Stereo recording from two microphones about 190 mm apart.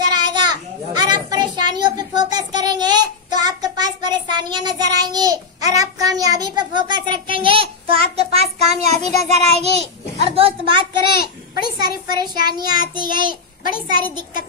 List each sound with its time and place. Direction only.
0.0 s children playing: 20° right (ahead or behind)
7.3 s child singing: 30° right (ahead or behind)
11.1 s a sound: 55° left (ahead or behind)
11.8 s child singing: 20° right (ahead or behind)